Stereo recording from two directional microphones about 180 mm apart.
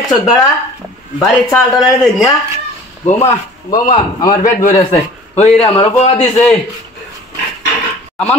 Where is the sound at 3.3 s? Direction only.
20° left (ahead or behind).